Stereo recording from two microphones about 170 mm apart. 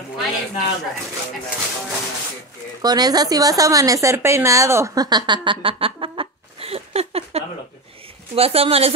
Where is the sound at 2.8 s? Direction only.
25° right (ahead or behind).